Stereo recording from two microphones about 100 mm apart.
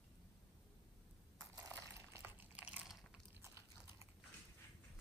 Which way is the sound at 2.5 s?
15° right (ahead or behind).